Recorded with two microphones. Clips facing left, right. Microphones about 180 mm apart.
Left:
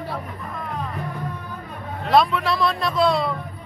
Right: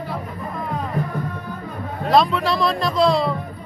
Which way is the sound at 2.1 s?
Centre (ahead or behind).